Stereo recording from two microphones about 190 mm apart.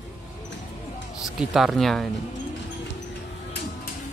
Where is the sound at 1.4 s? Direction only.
Centre (ahead or behind).